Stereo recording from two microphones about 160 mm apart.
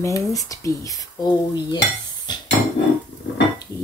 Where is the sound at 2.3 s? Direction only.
25° left (ahead or behind).